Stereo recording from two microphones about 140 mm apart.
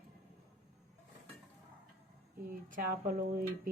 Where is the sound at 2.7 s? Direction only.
70° right (ahead or behind).